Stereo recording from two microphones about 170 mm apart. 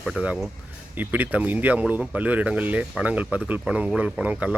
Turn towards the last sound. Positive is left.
turn(degrees=-10)  # may be behind; listen again after turning